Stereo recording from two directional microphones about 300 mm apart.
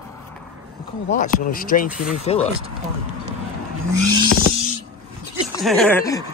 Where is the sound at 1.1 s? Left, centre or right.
Left.